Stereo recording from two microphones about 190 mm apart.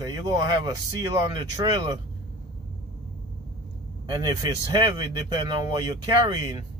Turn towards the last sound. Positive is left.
turn(degrees=-20)  # may be behind; listen again after turning